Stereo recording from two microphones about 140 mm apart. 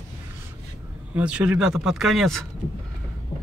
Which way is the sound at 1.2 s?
5° right (ahead or behind).